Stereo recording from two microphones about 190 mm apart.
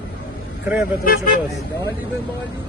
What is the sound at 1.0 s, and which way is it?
Speech, 50° left (ahead or behind).